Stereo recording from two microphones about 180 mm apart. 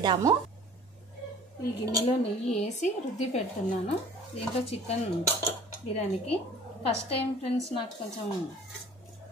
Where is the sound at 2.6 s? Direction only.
40° left (ahead or behind).